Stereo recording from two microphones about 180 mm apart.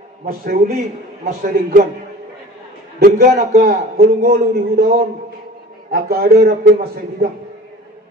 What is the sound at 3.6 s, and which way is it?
A man's voice, 60° right (ahead or behind).